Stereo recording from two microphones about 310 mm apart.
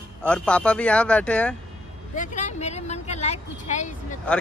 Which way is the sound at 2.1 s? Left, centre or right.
Left.